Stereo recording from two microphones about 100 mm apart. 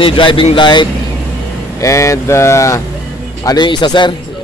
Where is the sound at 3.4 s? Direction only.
45° left (ahead or behind).